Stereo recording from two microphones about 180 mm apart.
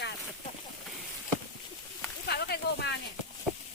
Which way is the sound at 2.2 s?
65° left (ahead or behind).